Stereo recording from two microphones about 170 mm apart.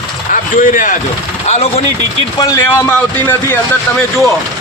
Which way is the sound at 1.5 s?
35° left (ahead or behind).